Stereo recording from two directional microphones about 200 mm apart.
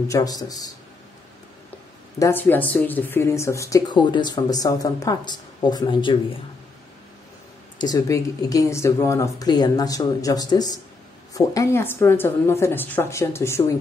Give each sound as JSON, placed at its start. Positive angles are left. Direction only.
{"t": 0.1, "sound": "a man's voice", "side_deg": 20}
{"t": 2.1, "sound": "speech", "side_deg": 10}
{"t": 7.8, "sound": "speech", "side_deg": 20}